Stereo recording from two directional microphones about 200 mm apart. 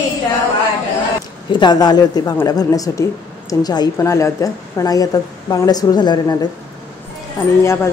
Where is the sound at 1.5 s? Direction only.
20° left (ahead or behind).